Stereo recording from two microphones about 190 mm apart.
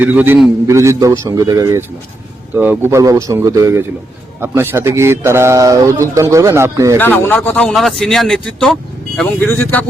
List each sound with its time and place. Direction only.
0.0 s a man's voice: 10° right (ahead or behind)
7.0 s speech: 10° left (ahead or behind)